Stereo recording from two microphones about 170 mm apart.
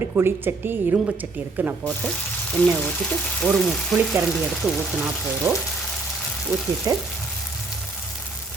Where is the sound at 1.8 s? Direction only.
10° left (ahead or behind).